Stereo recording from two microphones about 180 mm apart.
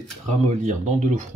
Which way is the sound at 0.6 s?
40° right (ahead or behind).